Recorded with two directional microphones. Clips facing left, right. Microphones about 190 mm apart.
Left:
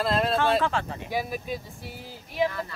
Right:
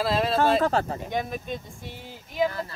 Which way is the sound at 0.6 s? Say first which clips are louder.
Right 3 dB; 40° right (ahead or behind).